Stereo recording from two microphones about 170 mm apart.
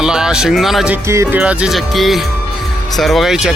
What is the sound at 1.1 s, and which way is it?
Music, 15° right (ahead or behind).